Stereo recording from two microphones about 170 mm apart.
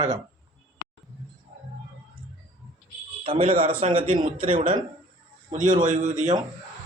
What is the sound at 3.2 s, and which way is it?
Speech, 30° right (ahead or behind).